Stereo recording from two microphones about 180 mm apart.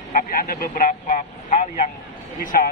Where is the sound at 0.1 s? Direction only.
55° left (ahead or behind).